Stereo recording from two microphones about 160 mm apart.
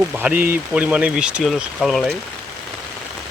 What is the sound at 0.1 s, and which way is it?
Speech, 10° right (ahead or behind).